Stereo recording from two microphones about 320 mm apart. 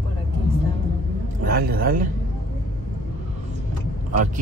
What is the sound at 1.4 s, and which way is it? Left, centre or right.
Speech, right.